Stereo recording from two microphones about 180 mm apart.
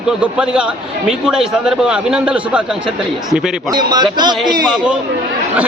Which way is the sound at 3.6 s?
25° right (ahead or behind).